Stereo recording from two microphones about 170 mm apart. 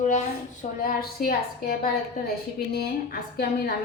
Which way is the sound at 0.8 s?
55° left (ahead or behind).